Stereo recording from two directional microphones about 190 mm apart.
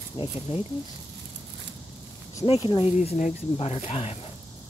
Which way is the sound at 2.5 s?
30° left (ahead or behind).